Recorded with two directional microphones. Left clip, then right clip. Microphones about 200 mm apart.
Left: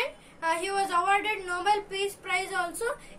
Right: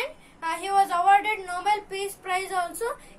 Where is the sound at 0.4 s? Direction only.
10° right (ahead or behind).